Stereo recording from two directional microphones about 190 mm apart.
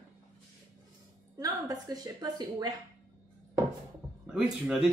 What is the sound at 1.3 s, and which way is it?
A woman's voice, 20° right (ahead or behind).